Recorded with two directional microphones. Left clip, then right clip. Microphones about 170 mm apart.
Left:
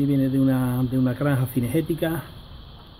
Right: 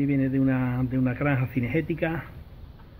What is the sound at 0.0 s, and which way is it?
Speech, 20° left (ahead or behind).